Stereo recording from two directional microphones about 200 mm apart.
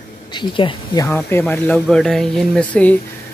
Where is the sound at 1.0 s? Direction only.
10° left (ahead or behind).